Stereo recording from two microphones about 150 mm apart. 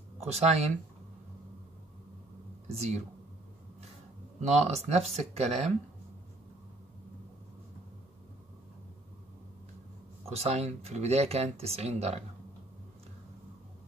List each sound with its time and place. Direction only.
0.3 s speech: 45° right (ahead or behind)
2.7 s speech: 45° right (ahead or behind)
4.4 s speech: 45° right (ahead or behind)
10.2 s speech: 45° right (ahead or behind)